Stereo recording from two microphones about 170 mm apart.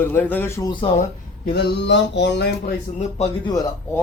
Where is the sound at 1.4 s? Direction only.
70° left (ahead or behind); by 2.5 s 85° left.